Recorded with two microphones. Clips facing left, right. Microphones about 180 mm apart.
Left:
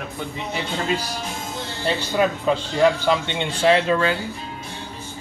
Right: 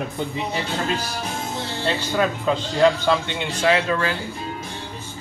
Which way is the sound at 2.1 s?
10° left (ahead or behind).